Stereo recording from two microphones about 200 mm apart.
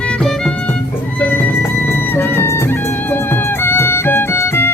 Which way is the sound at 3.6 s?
10° left (ahead or behind).